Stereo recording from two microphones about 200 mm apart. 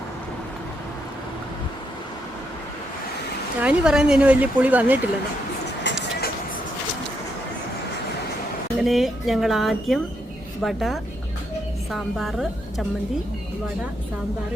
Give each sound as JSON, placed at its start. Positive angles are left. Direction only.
{"t": 3.6, "sound": "speech", "side_deg": -5}
{"t": 5.8, "sound": "a sound", "side_deg": 50}
{"t": 8.8, "sound": "a woman's voice", "side_deg": 0}